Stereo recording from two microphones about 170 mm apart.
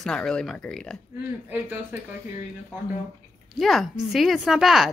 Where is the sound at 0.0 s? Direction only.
5° left (ahead or behind).